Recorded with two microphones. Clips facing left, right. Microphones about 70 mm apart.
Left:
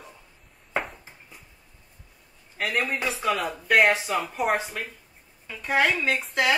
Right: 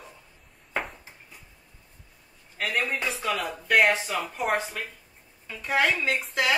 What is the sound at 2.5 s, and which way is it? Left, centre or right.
Speech, centre.